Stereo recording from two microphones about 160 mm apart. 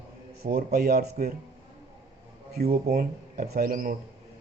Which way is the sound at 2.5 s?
70° right (ahead or behind).